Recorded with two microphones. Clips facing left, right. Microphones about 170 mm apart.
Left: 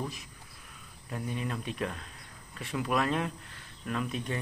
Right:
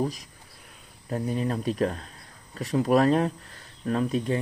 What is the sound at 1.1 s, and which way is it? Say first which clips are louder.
Speech: right 8 dB; 40° right (ahead or behind).